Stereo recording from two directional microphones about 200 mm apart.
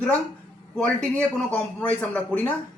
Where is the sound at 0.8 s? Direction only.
5° left (ahead or behind).